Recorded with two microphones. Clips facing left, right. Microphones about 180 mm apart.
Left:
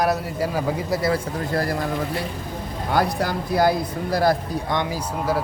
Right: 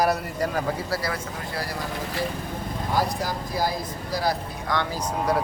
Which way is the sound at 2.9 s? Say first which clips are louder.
Left 4 dB; 65° left (ahead or behind).